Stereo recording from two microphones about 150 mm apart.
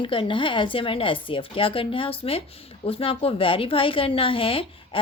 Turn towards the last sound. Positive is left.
turn(degrees=35)  # may be behind; listen again after turning